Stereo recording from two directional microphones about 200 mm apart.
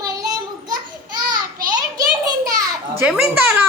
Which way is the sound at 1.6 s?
20° right (ahead or behind).